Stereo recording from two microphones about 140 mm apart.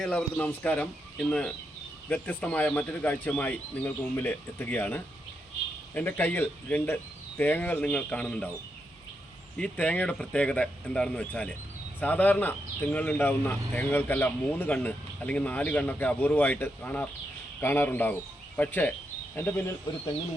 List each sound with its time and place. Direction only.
0.0 s speech: 5° left (ahead or behind)
9.6 s speech: 10° left (ahead or behind)